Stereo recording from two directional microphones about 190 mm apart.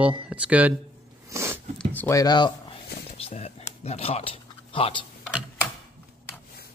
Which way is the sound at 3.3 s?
30° left (ahead or behind).